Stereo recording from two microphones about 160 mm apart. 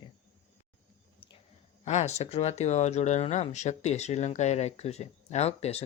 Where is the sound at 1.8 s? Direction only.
45° left (ahead or behind).